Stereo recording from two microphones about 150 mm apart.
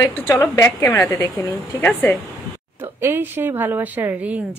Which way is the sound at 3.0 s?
15° right (ahead or behind).